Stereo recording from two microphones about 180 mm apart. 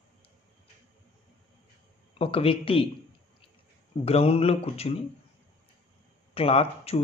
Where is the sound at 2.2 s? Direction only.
30° left (ahead or behind).